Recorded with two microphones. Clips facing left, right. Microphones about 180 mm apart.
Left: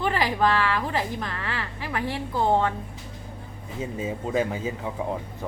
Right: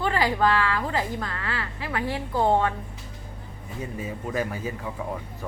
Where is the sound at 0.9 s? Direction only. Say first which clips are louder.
Even; 20° left (ahead or behind).